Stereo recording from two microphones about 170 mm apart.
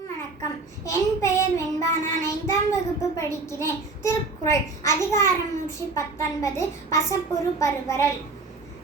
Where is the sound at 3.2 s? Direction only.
15° left (ahead or behind).